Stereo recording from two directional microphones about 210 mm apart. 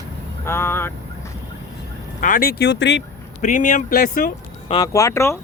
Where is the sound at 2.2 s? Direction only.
40° left (ahead or behind).